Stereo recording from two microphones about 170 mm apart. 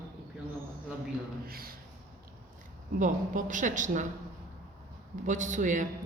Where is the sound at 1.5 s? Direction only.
60° right (ahead or behind).